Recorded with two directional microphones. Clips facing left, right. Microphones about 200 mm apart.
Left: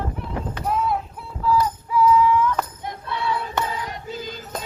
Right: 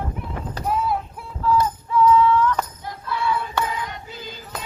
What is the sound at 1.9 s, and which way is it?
Music, 10° left (ahead or behind).